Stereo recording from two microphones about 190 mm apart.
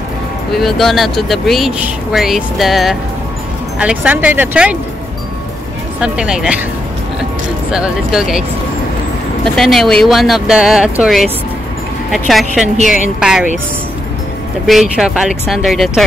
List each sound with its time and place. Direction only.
0.5 s speech: centre (ahead or behind)
5.9 s speech: 5° right (ahead or behind)
7.7 s speech: 5° right (ahead or behind)
14.7 s speech: centre (ahead or behind)